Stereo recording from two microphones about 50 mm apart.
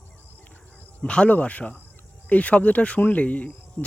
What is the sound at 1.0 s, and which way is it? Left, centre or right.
Speech, left.